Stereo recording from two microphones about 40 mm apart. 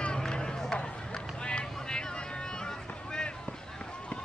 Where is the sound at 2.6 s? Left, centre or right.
Centre.